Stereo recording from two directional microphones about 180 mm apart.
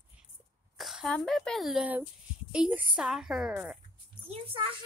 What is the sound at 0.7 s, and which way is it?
Speech, centre (ahead or behind).